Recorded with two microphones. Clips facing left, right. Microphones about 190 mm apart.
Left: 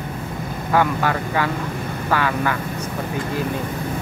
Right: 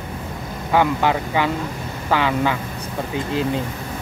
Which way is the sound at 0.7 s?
15° right (ahead or behind).